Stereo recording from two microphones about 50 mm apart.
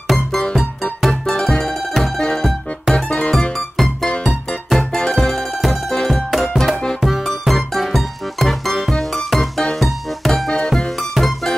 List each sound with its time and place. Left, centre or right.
0.4 s music: centre
2.1 s music: centre